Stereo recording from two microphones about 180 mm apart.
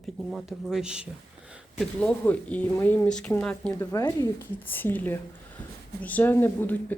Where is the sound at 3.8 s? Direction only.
20° left (ahead or behind).